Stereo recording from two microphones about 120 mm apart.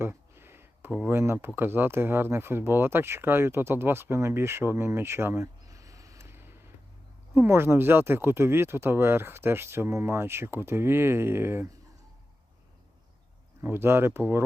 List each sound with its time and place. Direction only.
0.0 s a sound: 20° right (ahead or behind)
1.5 s speech: 20° right (ahead or behind)
13.6 s speech: 20° right (ahead or behind)